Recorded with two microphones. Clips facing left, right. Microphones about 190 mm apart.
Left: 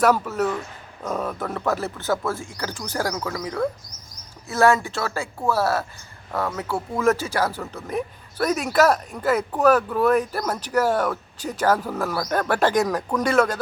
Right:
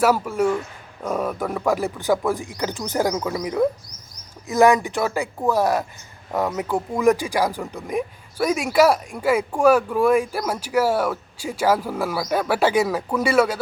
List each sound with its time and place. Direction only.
0.0 s speech: 10° right (ahead or behind)